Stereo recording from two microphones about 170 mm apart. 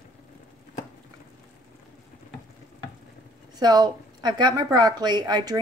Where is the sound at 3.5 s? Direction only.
25° right (ahead or behind).